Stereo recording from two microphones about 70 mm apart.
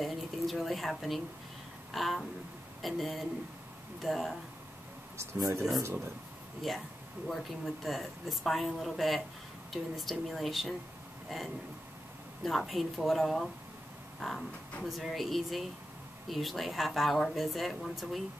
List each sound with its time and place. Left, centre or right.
0.0 s speech: centre
5.1 s speech: right
6.7 s speech: centre
11.2 s a sound: centre
12.4 s speech: centre